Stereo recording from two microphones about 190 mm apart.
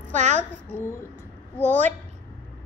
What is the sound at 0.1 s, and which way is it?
Speech, 35° right (ahead or behind).